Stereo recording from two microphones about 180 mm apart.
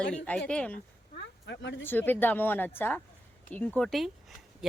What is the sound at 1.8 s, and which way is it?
Speech, 10° left (ahead or behind).